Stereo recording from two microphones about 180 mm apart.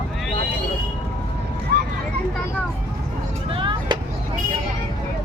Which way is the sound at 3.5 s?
25° right (ahead or behind).